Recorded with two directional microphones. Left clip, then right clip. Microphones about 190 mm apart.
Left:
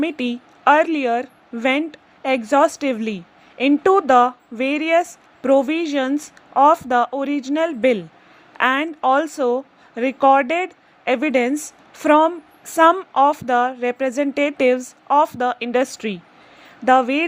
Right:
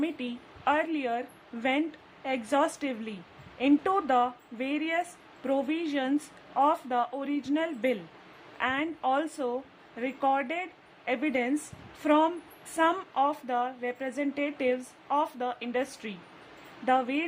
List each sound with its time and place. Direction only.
0.0 s speech: 35° left (ahead or behind)